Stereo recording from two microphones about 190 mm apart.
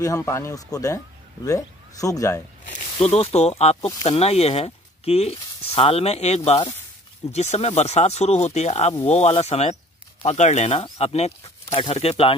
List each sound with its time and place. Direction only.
0.0 s speech: 15° left (ahead or behind)
2.6 s snake: 40° left (ahead or behind)
3.2 s speech: 35° left (ahead or behind)